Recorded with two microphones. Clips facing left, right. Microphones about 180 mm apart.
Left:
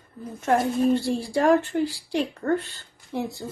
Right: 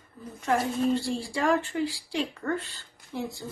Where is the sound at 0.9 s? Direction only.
60° left (ahead or behind).